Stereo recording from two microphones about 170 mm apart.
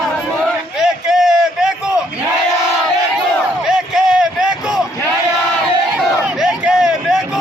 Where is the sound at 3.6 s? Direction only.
Centre (ahead or behind).